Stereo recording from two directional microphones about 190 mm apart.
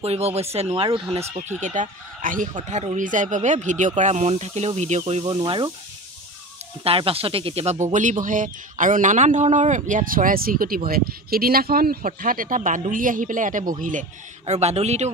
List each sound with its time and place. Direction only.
0.0 s speech: 35° right (ahead or behind)
1.6 s speech: 40° right (ahead or behind)
5.2 s speech: 25° right (ahead or behind)
6.8 s speech: 30° right (ahead or behind)